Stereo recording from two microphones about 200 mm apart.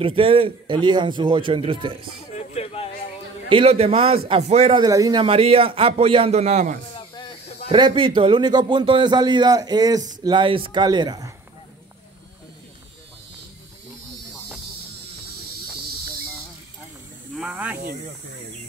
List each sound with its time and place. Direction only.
0.0 s a man's voice: 25° right (ahead or behind)
2.3 s a sound: 30° left (ahead or behind)
3.4 s a man's voice: 25° right (ahead or behind)
4.8 s a man's voice: 20° right (ahead or behind)
5.2 s a man's voice: 30° right (ahead or behind)
7.0 s snake: 25° left (ahead or behind)
7.6 s a man's voice: 25° right (ahead or behind)
17.4 s snake: 5° right (ahead or behind)